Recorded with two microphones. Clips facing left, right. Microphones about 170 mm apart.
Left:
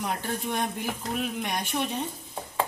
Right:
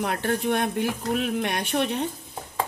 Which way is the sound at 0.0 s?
60° right (ahead or behind).